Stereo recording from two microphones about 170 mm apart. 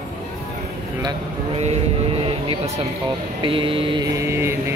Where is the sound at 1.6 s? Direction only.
35° right (ahead or behind).